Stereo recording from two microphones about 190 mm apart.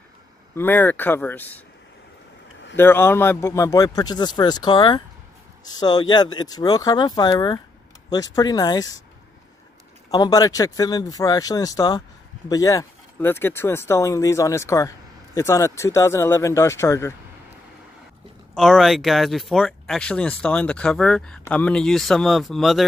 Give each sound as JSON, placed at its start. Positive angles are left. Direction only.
{"t": 0.6, "sound": "speech", "side_deg": 10}
{"t": 2.7, "sound": "a man's voice", "side_deg": 10}
{"t": 10.1, "sound": "a man's voice", "side_deg": 20}
{"t": 18.5, "sound": "speech", "side_deg": 0}